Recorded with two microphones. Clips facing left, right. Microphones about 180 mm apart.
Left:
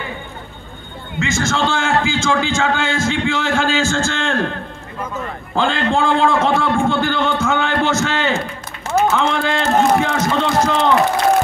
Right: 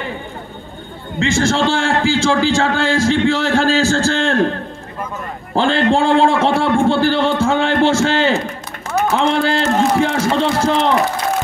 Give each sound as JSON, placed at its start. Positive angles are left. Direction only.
{"t": 1.2, "sound": "a man's voice", "side_deg": -30}
{"t": 5.5, "sound": "a man's voice", "side_deg": -35}